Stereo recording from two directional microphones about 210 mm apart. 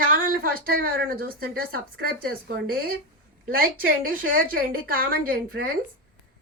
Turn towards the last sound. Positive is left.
turn(degrees=-45)  # may be behind; listen again after turning